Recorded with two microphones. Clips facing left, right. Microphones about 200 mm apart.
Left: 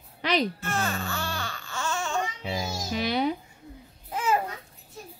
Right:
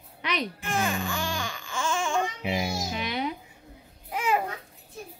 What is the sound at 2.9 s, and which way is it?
Babbling, 35° left (ahead or behind).